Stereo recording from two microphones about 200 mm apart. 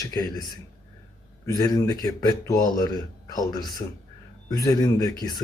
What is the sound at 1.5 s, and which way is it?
A man's voice, 20° left (ahead or behind).